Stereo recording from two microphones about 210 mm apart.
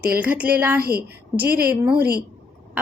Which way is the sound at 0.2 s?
5° right (ahead or behind).